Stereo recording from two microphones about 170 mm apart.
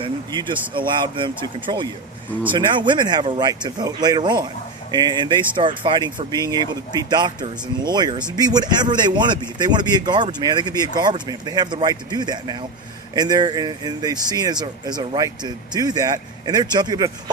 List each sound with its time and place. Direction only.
0.0 s a man's voice: 25° right (ahead or behind)